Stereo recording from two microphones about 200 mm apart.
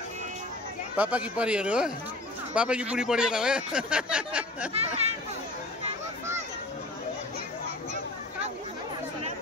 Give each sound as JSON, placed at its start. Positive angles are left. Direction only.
{"t": 0.9, "sound": "speech", "side_deg": -5}
{"t": 4.7, "sound": "speech", "side_deg": -30}